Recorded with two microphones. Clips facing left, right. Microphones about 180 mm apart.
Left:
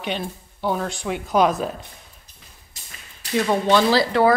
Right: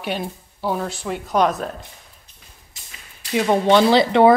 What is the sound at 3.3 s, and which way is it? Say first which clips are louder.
Speech: right 3 dB; 20° right (ahead or behind).